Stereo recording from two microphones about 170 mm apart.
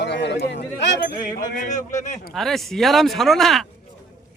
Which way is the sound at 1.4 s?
45° left (ahead or behind).